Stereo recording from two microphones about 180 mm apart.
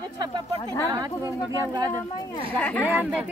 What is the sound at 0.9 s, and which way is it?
Speech, 20° right (ahead or behind).